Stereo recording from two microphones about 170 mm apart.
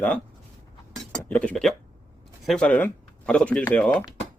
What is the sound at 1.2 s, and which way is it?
Speech, 10° left (ahead or behind).